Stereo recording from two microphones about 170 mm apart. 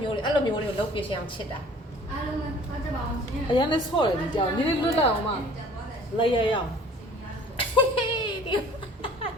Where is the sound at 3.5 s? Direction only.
25° left (ahead or behind).